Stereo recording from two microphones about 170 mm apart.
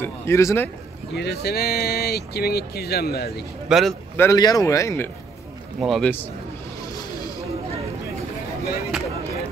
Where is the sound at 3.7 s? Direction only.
5° right (ahead or behind).